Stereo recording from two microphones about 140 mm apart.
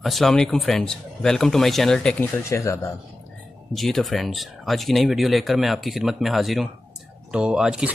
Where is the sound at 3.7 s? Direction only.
Centre (ahead or behind).